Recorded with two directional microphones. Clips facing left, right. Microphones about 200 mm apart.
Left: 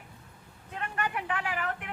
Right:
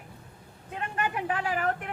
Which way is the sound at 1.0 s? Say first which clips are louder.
Right 3 dB; 30° right (ahead or behind).